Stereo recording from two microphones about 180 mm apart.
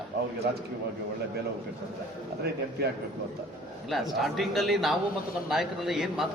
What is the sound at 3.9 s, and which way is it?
A man's voice, centre (ahead or behind).